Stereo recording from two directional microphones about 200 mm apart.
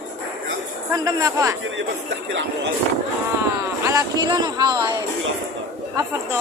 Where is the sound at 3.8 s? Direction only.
20° right (ahead or behind).